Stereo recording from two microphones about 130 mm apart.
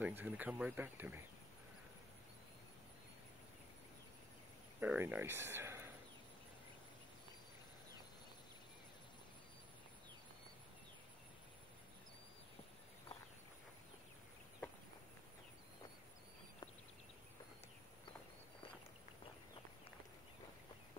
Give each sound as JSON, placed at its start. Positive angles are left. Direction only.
{"t": 0.0, "sound": "speech", "side_deg": -15}
{"t": 4.7, "sound": "speech", "side_deg": -15}